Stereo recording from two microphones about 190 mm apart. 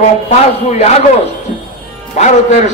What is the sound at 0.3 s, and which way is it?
Speech, 35° left (ahead or behind).